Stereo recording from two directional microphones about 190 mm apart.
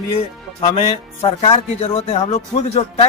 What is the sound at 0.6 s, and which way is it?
Speech, 30° left (ahead or behind).